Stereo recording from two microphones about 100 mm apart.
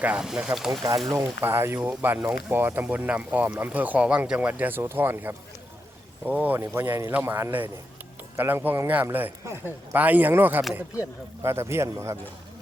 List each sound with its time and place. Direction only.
0.0 s speech: 10° right (ahead or behind)
1.1 s speech: 25° right (ahead or behind)
9.9 s speech: 15° right (ahead or behind)